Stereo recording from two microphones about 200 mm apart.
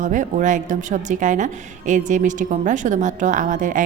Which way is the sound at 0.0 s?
40° right (ahead or behind).